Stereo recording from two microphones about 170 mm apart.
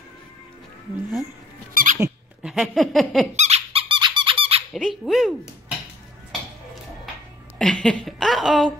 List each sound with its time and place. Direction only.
1.7 s squeak: 55° right (ahead or behind)
2.4 s a sound: centre (ahead or behind)
3.3 s squeak: 40° right (ahead or behind)
4.7 s dog: centre (ahead or behind)
7.5 s speech: 5° left (ahead or behind)